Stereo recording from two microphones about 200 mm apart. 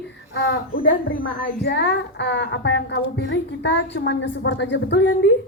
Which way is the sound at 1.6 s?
60° left (ahead or behind).